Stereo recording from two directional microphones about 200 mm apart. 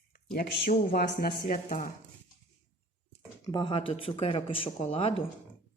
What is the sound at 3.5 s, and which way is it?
Speech, 25° left (ahead or behind).